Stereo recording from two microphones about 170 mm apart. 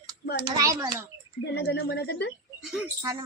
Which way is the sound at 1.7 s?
85° left.